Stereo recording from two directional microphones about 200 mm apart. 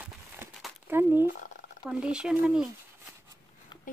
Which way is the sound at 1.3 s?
40° left (ahead or behind).